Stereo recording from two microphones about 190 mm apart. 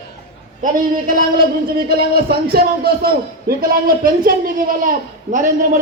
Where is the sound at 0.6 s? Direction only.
45° right (ahead or behind).